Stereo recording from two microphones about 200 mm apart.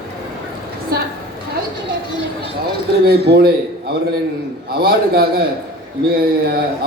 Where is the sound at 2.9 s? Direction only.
50° right (ahead or behind).